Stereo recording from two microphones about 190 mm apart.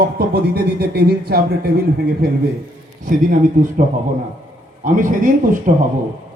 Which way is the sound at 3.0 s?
45° right (ahead or behind).